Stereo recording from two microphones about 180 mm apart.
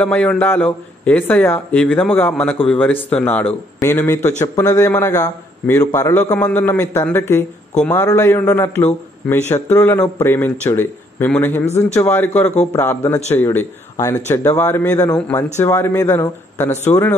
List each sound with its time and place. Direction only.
0.0 s speech: 5° left (ahead or behind)